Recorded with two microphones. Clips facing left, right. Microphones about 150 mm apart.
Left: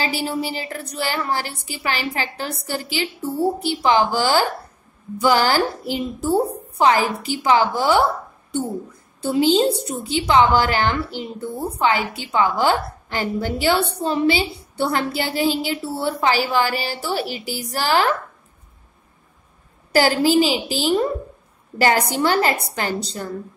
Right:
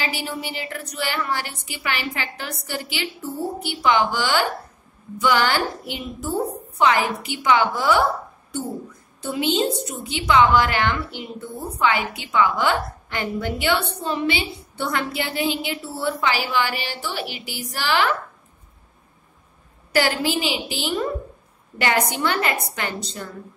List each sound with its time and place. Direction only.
0.0 s a woman's voice: 35° left (ahead or behind)
19.9 s a woman's voice: 35° left (ahead or behind)